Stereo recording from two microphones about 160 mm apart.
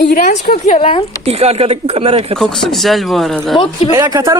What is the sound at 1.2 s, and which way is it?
Speech, 40° right (ahead or behind).